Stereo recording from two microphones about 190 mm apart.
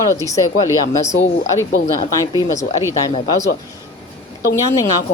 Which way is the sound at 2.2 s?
20° left (ahead or behind).